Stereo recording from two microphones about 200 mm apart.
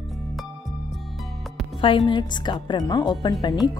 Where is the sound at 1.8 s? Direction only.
25° left (ahead or behind).